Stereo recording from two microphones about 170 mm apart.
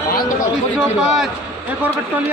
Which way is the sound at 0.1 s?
60° left (ahead or behind).